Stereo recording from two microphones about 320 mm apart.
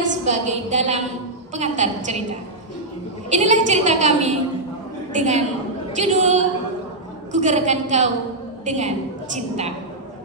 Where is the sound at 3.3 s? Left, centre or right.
Right.